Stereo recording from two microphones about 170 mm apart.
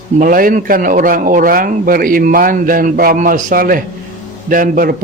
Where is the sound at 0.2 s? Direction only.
55° right (ahead or behind).